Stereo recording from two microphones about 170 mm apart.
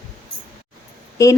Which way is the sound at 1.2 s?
20° left (ahead or behind).